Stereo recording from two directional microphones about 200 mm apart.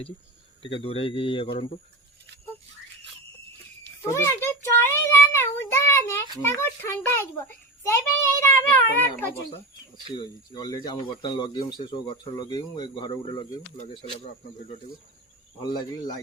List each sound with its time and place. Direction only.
0.6 s speech: 30° left (ahead or behind)
4.1 s child singing: 10° left (ahead or behind)
6.4 s a child's voice: 10° left (ahead or behind)
10.2 s speech: 20° left (ahead or behind)
15.6 s speech: 20° left (ahead or behind)